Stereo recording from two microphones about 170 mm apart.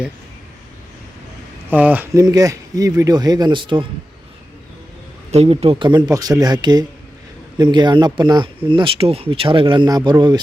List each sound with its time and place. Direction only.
1.7 s speech: 10° right (ahead or behind)
2.2 s speech: 20° right (ahead or behind)
5.3 s speech: 40° right (ahead or behind)